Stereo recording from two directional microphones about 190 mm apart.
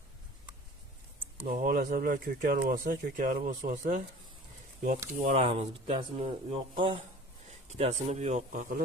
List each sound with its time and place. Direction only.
1.5 s speech: 45° right (ahead or behind)
5.1 s speech: 40° right (ahead or behind)